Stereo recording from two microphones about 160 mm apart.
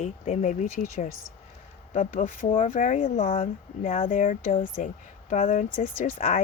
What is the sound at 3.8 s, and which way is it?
Speech, 55° left (ahead or behind).